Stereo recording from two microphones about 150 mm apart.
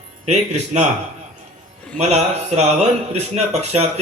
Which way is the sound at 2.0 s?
50° right (ahead or behind).